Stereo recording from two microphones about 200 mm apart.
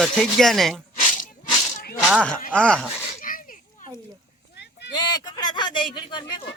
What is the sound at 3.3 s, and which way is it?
Children playing, 40° left (ahead or behind).